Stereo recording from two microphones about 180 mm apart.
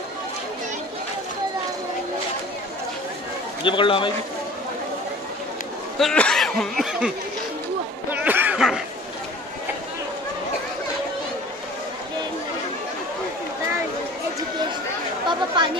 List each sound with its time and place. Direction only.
3.6 s a man's voice: 30° left (ahead or behind)
5.9 s speech: 5° left (ahead or behind)
8.1 s a sound: 10° right (ahead or behind)
15.2 s speech: 25° right (ahead or behind)